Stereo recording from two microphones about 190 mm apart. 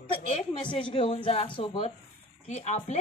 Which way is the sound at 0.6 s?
25° left (ahead or behind).